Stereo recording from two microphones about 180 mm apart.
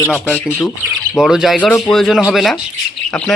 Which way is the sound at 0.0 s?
10° left (ahead or behind).